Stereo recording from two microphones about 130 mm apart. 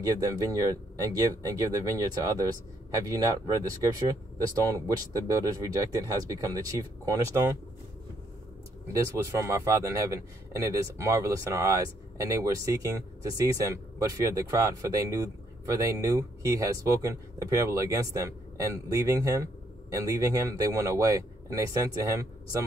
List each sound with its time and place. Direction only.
0.0 s a man's voice: 25° right (ahead or behind)
8.9 s a man's voice: 25° right (ahead or behind)